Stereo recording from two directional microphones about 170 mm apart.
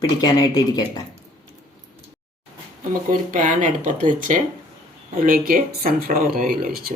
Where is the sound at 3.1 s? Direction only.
50° right (ahead or behind).